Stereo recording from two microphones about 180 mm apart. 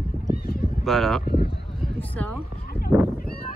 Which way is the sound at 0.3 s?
55° left (ahead or behind).